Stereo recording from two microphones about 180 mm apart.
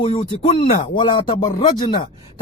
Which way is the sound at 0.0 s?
30° left (ahead or behind).